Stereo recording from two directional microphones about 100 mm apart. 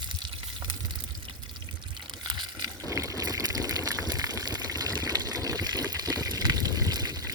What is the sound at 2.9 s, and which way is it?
Liquid, 30° right (ahead or behind).